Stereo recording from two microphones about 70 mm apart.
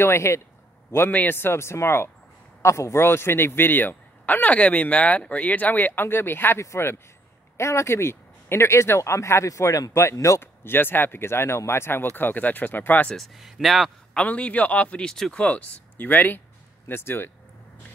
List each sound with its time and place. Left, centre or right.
0.0 s speech: left
0.9 s speech: left
10.4 s speech: left
13.1 s speech: centre
14.1 s speech: centre
15.0 s speech: centre
15.3 s speech: left